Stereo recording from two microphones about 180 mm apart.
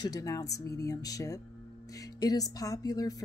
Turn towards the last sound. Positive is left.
turn(degrees=20)  # may be behind; listen again after turning